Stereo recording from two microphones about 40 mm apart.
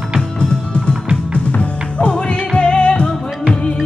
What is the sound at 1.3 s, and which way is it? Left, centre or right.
Music, left.